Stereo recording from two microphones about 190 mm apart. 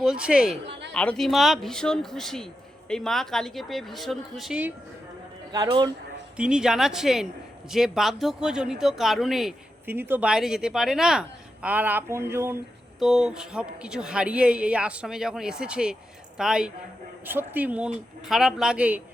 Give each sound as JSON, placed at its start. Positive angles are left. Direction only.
{"t": 0.0, "sound": "speech", "side_deg": -5}
{"t": 5.5, "sound": "a man's voice", "side_deg": -20}
{"t": 6.3, "sound": "speech", "side_deg": -5}
{"t": 13.0, "sound": "speech", "side_deg": 0}